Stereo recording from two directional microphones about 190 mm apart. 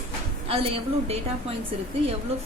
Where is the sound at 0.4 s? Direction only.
30° right (ahead or behind).